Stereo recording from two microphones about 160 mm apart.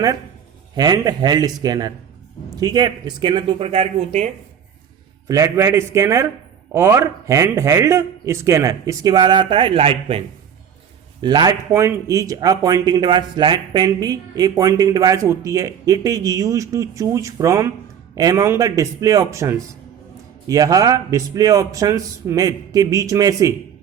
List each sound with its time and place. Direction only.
0.8 s speech: 25° right (ahead or behind); by 4.3 s 40° right (ahead or behind)
5.3 s a man's voice: 20° right (ahead or behind)